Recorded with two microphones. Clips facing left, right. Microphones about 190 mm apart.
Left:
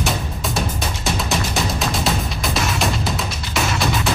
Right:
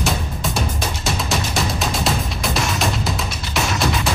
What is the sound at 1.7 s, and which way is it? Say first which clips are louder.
Music: even; centre (ahead or behind).